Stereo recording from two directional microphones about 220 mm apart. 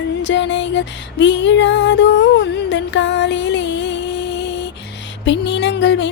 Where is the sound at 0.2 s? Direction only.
55° left (ahead or behind).